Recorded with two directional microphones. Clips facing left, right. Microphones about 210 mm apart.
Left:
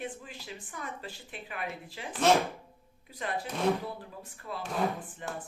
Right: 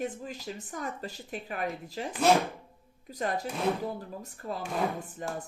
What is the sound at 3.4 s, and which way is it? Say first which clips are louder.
Speech: left 1 dB; 5° right (ahead or behind).